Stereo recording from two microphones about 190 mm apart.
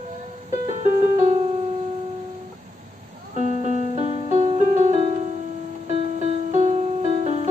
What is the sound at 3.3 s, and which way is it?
Music, 40° right (ahead or behind).